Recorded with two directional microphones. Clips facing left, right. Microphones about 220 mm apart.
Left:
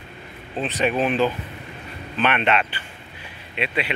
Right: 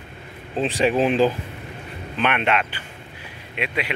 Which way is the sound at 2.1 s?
10° right (ahead or behind).